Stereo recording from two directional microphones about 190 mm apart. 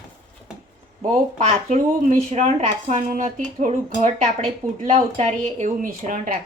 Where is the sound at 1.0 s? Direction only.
35° right (ahead or behind).